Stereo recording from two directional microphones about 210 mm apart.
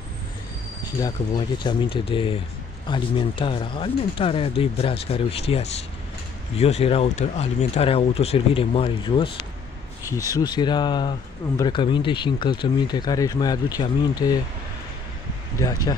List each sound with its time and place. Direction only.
1.0 s speech: 20° left (ahead or behind)
10.3 s speech: 20° left (ahead or behind)
15.6 s speech: 15° left (ahead or behind)